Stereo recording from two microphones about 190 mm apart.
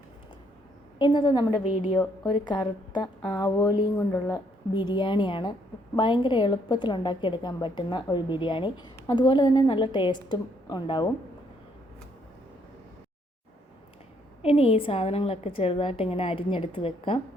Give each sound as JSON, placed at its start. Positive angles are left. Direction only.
{"t": 0.9, "sound": "a woman's voice", "side_deg": 25}
{"t": 14.4, "sound": "a woman's voice", "side_deg": 30}